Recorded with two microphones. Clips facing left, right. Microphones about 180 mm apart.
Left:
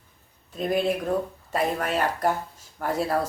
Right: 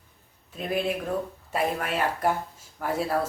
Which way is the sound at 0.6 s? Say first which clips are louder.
Left 4 dB; 40° left (ahead or behind).